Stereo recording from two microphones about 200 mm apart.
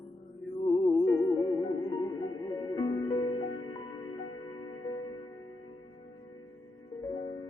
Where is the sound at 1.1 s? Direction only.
20° left (ahead or behind).